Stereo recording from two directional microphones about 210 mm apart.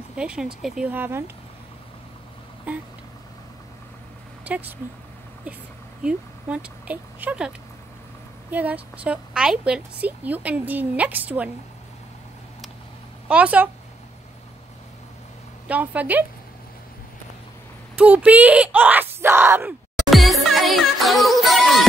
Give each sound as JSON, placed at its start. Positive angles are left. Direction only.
{"t": 0.1, "sound": "a woman's voice", "side_deg": -5}
{"t": 2.7, "sound": "speech", "side_deg": -5}
{"t": 4.5, "sound": "speech", "side_deg": -10}
{"t": 6.0, "sound": "a woman's voice", "side_deg": -5}
{"t": 13.3, "sound": "speech", "side_deg": -5}
{"t": 15.7, "sound": "speech", "side_deg": -5}
{"t": 17.9, "sound": "speech", "side_deg": -5}
{"t": 20.1, "sound": "music", "side_deg": 0}